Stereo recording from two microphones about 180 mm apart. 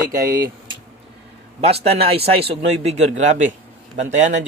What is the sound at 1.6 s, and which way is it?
Speech, 35° right (ahead or behind).